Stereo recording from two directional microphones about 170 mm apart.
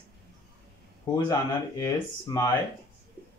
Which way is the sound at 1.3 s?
20° left (ahead or behind).